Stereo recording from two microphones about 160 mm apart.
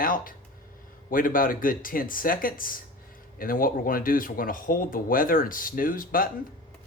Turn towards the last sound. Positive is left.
turn(degrees=60)  # may be behind; listen again after turning